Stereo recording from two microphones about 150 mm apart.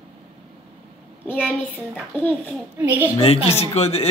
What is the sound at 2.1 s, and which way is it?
Speech, 10° left (ahead or behind).